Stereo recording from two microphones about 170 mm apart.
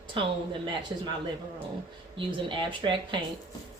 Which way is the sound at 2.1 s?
30° right (ahead or behind).